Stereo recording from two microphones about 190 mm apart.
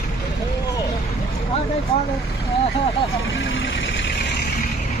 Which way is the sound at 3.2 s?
90° left.